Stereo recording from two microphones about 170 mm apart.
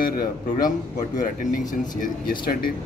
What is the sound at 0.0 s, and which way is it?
A man's voice, 60° left (ahead or behind).